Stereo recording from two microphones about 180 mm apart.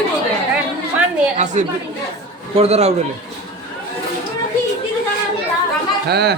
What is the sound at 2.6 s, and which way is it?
Speech, 35° right (ahead or behind).